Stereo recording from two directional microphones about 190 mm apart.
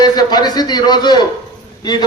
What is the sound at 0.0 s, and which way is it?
A man's voice, 20° left (ahead or behind).